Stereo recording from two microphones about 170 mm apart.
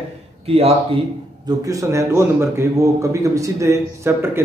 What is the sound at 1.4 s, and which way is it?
A man's voice, 20° right (ahead or behind).